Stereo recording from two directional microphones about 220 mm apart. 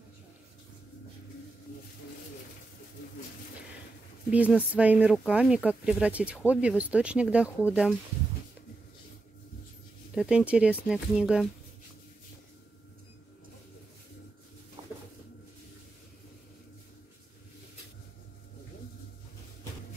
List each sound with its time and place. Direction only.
4.3 s speech: 5° right (ahead or behind)
10.1 s speech: 5° right (ahead or behind)
14.8 s a sound: 25° right (ahead or behind)